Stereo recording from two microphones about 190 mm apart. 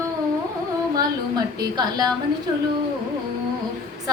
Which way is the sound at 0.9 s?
20° right (ahead or behind).